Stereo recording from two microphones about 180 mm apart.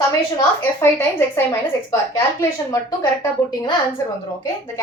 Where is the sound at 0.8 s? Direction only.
15° left (ahead or behind).